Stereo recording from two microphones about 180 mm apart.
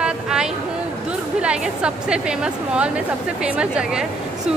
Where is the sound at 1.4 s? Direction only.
5° right (ahead or behind).